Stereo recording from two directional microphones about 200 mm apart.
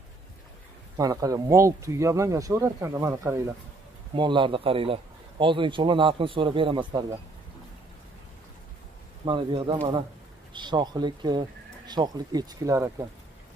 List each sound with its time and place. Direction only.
0.9 s a man's voice: 15° right (ahead or behind)
9.2 s a man's voice: 25° right (ahead or behind)